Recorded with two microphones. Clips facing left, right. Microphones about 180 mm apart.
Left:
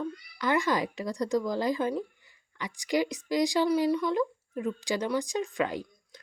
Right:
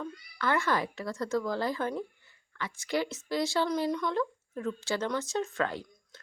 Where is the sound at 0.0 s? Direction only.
15° left (ahead or behind).